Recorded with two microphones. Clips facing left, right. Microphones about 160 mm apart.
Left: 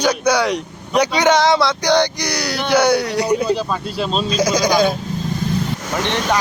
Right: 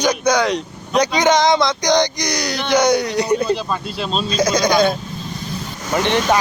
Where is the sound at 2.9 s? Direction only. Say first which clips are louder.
Even; 15° right (ahead or behind).